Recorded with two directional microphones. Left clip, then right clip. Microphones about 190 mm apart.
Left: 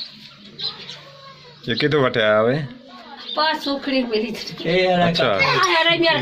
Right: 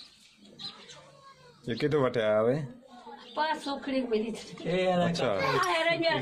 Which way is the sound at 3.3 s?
40° left (ahead or behind).